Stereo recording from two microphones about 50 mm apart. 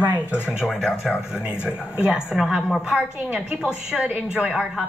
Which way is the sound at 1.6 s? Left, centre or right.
Right.